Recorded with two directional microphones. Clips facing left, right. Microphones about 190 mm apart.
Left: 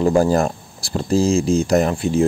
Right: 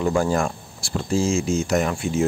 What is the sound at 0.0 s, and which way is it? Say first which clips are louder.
Speech: left 5 dB; 35° left (ahead or behind).